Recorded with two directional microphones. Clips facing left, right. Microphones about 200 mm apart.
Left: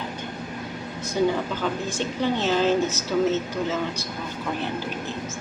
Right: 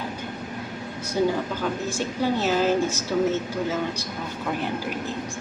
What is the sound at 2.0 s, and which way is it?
A woman's voice, 10° right (ahead or behind).